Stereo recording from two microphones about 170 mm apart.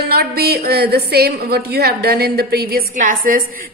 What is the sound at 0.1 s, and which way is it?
A woman's voice, 65° right (ahead or behind).